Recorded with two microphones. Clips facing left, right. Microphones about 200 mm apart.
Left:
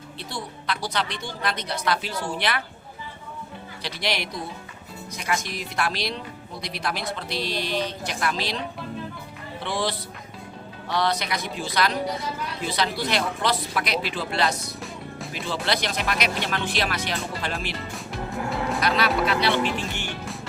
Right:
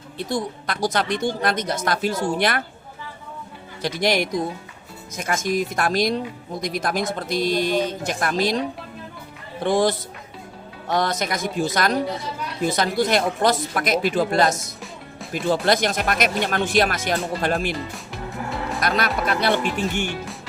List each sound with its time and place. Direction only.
0.2 s speech: 45° right (ahead or behind)
3.8 s speech: 45° right (ahead or behind)
18.8 s speech: 50° right (ahead or behind)